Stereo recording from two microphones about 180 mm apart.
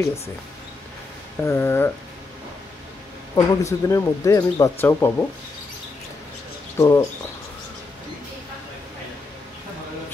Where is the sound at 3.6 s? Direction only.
15° left (ahead or behind).